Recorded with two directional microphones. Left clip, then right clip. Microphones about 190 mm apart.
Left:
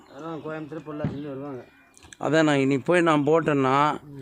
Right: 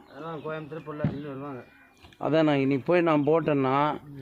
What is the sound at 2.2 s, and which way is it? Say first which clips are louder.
Speech: left 2 dB; 20° left (ahead or behind).